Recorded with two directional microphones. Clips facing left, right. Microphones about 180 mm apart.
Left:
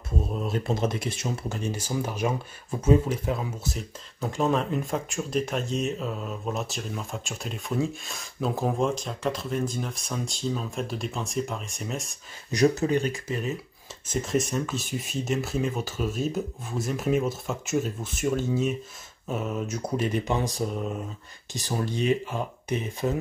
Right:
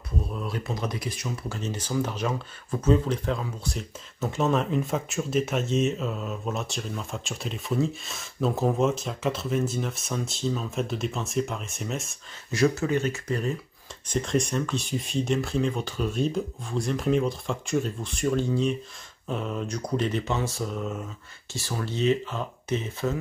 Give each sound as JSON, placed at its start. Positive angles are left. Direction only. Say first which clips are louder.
{"t": 0.2, "sound": "speech", "louder": "left 4 dB", "side_deg": 25}
{"t": 1.6, "sound": "speech", "louder": "right 4 dB", "side_deg": 10}
{"t": 12.9, "sound": "speech", "louder": "left 1 dB", "side_deg": 15}
{"t": 13.3, "sound": "speech", "louder": "right 2 dB", "side_deg": 5}